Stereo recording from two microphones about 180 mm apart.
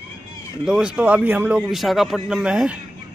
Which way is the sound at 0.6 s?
5° right (ahead or behind).